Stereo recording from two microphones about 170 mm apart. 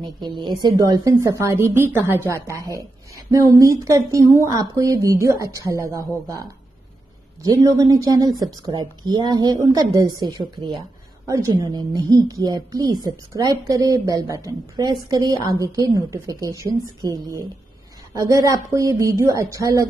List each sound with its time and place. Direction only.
0.0 s a woman's voice: 25° right (ahead or behind)
7.4 s a woman's voice: 20° right (ahead or behind)